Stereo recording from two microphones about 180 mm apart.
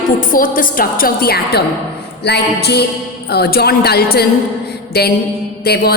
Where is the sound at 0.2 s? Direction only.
50° left (ahead or behind).